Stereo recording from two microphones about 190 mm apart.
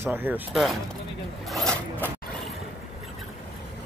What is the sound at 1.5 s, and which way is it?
Zipper, 5° left (ahead or behind).